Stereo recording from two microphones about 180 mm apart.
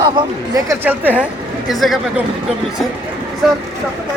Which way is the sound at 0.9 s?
10° right (ahead or behind).